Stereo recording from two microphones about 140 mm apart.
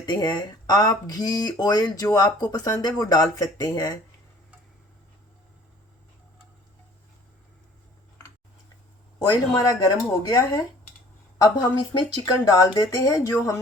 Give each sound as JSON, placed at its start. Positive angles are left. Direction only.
{"t": 0.0, "sound": "speech", "side_deg": 30}
{"t": 9.1, "sound": "speech", "side_deg": 30}